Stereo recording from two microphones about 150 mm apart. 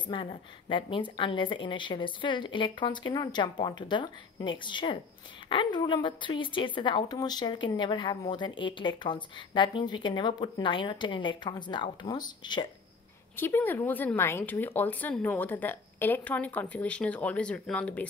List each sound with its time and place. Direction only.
0.1 s speech: 35° left (ahead or behind)
13.4 s speech: 15° left (ahead or behind)